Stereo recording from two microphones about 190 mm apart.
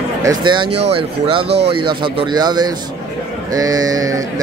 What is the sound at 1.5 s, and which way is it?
Speech, 60° right (ahead or behind).